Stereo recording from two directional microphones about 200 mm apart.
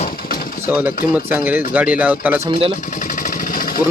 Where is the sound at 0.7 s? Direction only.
10° right (ahead or behind).